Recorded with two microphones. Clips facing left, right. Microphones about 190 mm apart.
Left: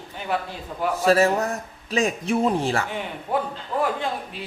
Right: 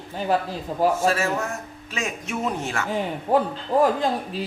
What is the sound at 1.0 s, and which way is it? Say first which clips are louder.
A man's voice: left 4 dB; 35° left (ahead or behind).